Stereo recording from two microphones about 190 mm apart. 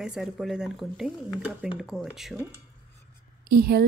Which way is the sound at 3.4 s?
55° right (ahead or behind).